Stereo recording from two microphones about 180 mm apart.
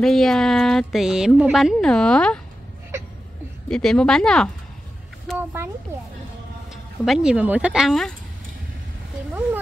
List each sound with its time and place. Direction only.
0.0 s a woman's voice: centre (ahead or behind)
3.6 s a woman's voice: 5° left (ahead or behind)
5.3 s a sound: centre (ahead or behind)
6.7 s speech: 5° right (ahead or behind)